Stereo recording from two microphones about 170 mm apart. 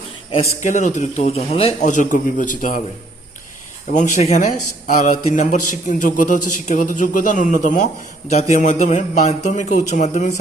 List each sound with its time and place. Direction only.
0.6 s a man's voice: 45° left (ahead or behind)
1.9 s a man's voice: 50° left (ahead or behind)
3.8 s a man's voice: 50° left (ahead or behind)